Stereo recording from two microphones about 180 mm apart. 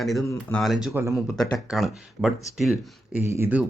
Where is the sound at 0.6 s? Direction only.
Centre (ahead or behind).